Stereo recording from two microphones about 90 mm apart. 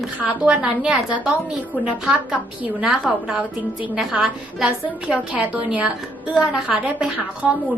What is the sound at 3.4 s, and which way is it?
Speech, 15° right (ahead or behind).